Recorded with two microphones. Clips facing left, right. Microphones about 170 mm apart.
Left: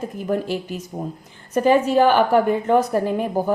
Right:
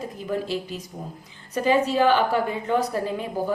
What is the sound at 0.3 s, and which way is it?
A woman's voice, 50° left (ahead or behind).